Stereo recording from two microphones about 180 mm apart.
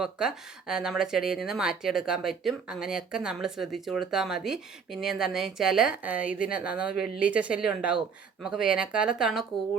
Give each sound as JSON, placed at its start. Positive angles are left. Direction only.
{"t": 0.0, "sound": "speech", "side_deg": -5}